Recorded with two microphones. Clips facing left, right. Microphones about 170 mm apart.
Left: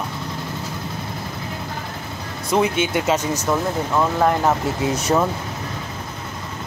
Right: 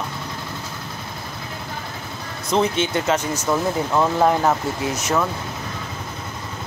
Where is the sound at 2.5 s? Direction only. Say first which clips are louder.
Left 1 dB; 10° left (ahead or behind).